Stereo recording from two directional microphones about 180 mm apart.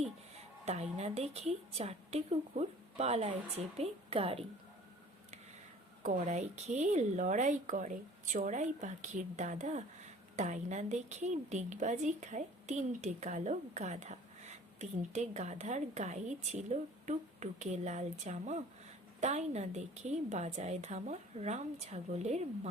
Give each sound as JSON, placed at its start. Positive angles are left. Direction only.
{"t": 0.6, "sound": "speech", "side_deg": -40}
{"t": 6.0, "sound": "speech", "side_deg": -45}